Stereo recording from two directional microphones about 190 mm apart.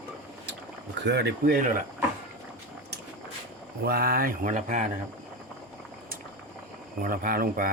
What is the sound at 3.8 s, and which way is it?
Speech, 55° right (ahead or behind).